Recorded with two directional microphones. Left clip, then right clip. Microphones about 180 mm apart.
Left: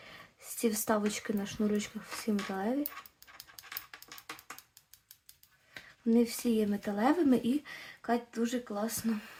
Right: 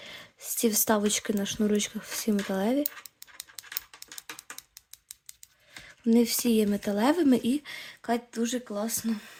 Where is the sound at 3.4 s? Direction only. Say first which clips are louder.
Right 5 dB; 20° right (ahead or behind).